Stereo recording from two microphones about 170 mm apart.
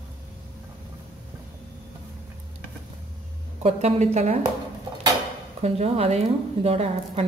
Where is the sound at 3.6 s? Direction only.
40° right (ahead or behind).